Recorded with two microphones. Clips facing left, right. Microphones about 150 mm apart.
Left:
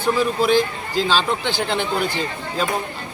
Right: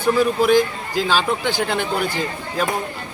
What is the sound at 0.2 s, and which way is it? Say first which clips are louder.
Speech: right 2 dB; 10° right (ahead or behind).